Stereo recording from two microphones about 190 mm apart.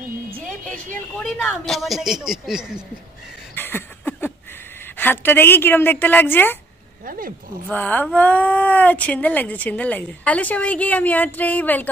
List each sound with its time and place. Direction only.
1.2 s speech: 5° left (ahead or behind)
3.5 s a sound: 10° left (ahead or behind)
4.9 s speech: 10° left (ahead or behind)
7.1 s speech: 45° right (ahead or behind)
7.7 s speech: 10° left (ahead or behind)